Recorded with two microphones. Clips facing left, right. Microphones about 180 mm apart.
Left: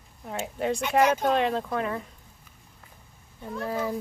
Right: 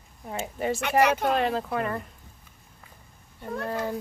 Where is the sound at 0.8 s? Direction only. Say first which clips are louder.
Even; 70° right (ahead or behind).